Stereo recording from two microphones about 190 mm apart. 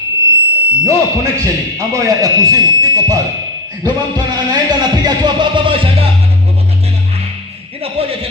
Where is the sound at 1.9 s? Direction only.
20° right (ahead or behind).